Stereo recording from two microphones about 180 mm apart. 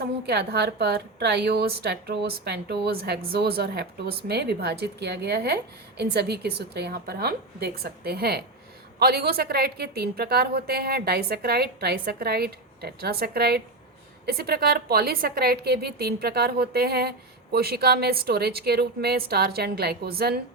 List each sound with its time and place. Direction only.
0.0 s a woman's voice: 65° right (ahead or behind)